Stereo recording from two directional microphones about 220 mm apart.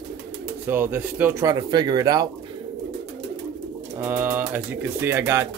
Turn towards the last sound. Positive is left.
turn(degrees=-10)  # may be behind; listen again after turning